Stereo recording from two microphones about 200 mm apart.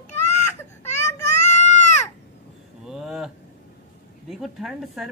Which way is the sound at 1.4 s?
35° left (ahead or behind).